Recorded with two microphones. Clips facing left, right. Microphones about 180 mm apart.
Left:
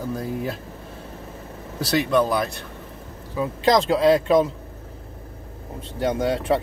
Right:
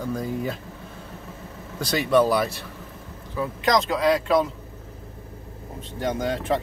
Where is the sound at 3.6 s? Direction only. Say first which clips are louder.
Left 4 dB; 30° left (ahead or behind).